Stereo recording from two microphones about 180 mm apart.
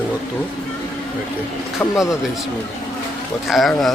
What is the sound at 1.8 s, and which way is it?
Speech, 10° left (ahead or behind).